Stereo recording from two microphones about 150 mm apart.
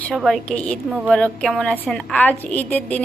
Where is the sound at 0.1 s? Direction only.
Centre (ahead or behind).